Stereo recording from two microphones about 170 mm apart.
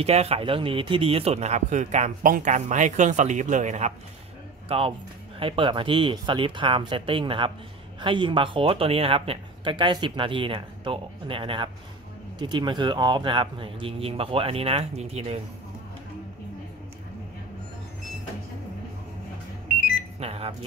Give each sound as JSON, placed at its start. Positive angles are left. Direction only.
{"t": 0.0, "sound": "speech", "side_deg": -35}
{"t": 4.6, "sound": "speech", "side_deg": -35}
{"t": 20.2, "sound": "alarm clock", "side_deg": -35}